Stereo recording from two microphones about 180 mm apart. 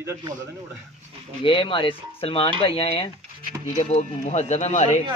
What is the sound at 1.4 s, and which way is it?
Speech, 30° left (ahead or behind).